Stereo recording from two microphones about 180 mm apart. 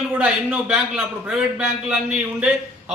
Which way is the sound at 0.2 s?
5° right (ahead or behind).